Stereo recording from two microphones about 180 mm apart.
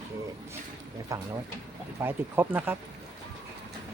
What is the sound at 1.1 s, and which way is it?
Speech, 20° right (ahead or behind).